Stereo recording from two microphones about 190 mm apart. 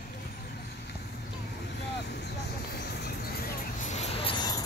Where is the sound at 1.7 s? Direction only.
65° left (ahead or behind).